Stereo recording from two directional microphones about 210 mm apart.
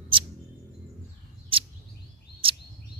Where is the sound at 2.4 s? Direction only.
25° right (ahead or behind).